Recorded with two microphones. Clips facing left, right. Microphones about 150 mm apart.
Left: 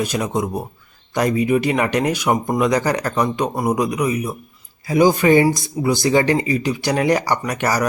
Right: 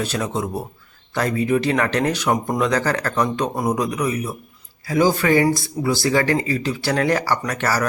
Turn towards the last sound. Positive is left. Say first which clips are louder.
# left 2 dB
turn(degrees=15)  # may be behind; listen again after turning